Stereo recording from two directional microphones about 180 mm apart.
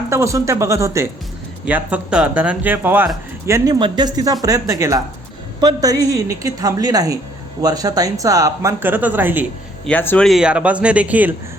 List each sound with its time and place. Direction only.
0.1 s speech: 15° right (ahead or behind)
3.8 s speech: 25° right (ahead or behind); by 9.5 s 10° right (ahead or behind)
9.8 s speech: 10° left (ahead or behind)
10.2 s speech: 5° right (ahead or behind)